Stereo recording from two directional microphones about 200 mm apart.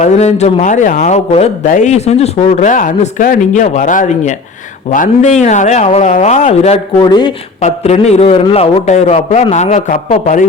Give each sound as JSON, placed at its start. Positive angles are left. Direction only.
{"t": 0.0, "sound": "a man's voice", "side_deg": 35}
{"t": 7.6, "sound": "a man's voice", "side_deg": 35}